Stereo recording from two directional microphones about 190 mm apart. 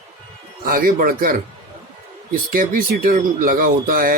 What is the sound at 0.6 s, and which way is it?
Speech, 45° right (ahead or behind).